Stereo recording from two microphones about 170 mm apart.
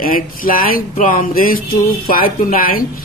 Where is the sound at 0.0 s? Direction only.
55° left (ahead or behind).